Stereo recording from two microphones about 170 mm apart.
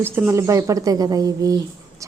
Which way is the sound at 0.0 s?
15° right (ahead or behind).